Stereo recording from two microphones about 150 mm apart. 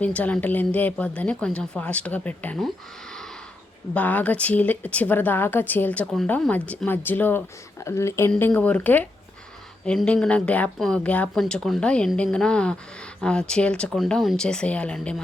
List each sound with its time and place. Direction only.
0.0 s speech: 10° left (ahead or behind)
3.9 s speech: 10° left (ahead or behind)